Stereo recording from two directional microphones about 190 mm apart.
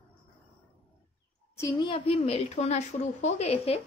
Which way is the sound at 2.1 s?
35° left (ahead or behind).